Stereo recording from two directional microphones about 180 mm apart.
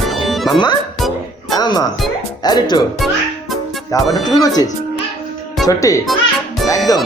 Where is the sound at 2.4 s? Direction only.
20° left (ahead or behind).